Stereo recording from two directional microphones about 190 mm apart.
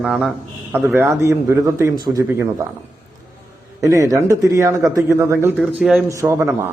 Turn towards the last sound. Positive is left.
turn(degrees=-15)  # may be behind; listen again after turning